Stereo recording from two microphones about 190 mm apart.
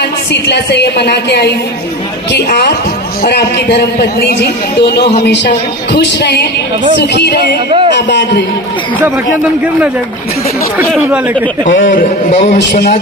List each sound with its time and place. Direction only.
0.4 s a woman's voice: 65° left (ahead or behind)
10.8 s speech: 10° right (ahead or behind)
11.8 s a man's voice: 45° left (ahead or behind)
12.5 s a woman's voice: 55° left (ahead or behind)